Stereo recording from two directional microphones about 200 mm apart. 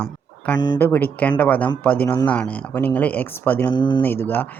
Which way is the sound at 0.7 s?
10° left (ahead or behind).